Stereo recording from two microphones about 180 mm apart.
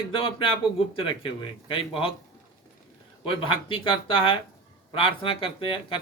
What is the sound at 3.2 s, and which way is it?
Speech, 30° left (ahead or behind).